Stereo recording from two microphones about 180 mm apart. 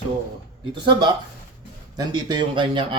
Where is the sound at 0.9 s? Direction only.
25° right (ahead or behind).